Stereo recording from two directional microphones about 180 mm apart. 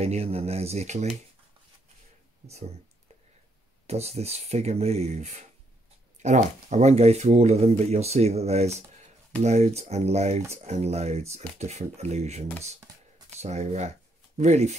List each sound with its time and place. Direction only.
0.0 s speech: 35° right (ahead or behind)
2.4 s speech: 35° right (ahead or behind)
3.8 s speech: 35° right (ahead or behind)